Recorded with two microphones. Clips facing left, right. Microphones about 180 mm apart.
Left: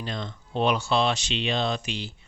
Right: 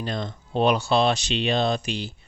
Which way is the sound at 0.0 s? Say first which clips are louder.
Right 4 dB; 40° right (ahead or behind).